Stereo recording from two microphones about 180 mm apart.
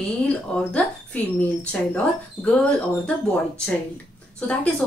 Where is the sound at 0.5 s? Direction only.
10° left (ahead or behind).